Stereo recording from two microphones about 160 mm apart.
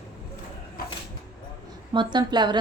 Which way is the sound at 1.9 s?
30° right (ahead or behind).